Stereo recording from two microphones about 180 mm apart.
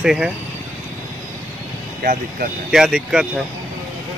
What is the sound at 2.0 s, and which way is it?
Speech, 50° right (ahead or behind).